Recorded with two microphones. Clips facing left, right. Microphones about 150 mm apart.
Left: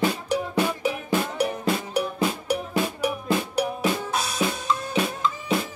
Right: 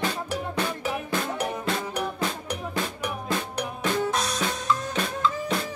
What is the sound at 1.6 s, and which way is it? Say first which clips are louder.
Drum: left 3 dB; 10° left (ahead or behind).